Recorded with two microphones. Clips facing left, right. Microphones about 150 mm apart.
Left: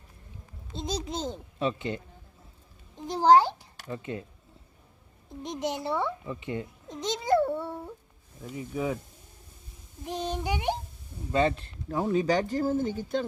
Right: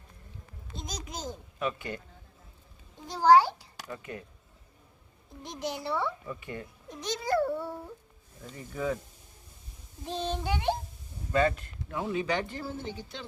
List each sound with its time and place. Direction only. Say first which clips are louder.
0.7 s a child's voice: left 8 dB; 30° left (ahead or behind)
3.1 s a child's voice: left 1 dB; 20° left (ahead or behind)
5.4 s a child's voice: left 4 dB; 20° left (ahead or behind)
8.4 s speech: left 2 dB; 10° left (ahead or behind)
10.0 s speech: left 1 dB; 15° left (ahead or behind); by 13.2 s 45° left (ahead or behind)